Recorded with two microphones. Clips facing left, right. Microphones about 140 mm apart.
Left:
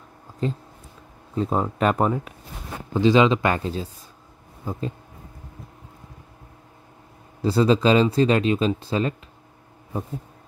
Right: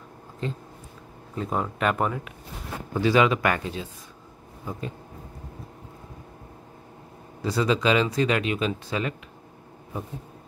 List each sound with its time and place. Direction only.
0.4 s speech: 35° left (ahead or behind)
2.9 s speech: 25° left (ahead or behind)
7.4 s speech: 30° left (ahead or behind)